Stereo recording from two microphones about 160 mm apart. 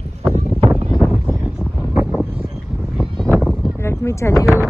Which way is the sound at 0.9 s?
5° right (ahead or behind).